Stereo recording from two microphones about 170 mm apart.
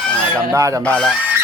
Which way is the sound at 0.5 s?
20° right (ahead or behind).